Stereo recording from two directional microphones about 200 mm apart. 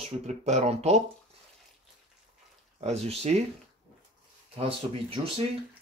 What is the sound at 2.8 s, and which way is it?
Speech, 35° right (ahead or behind).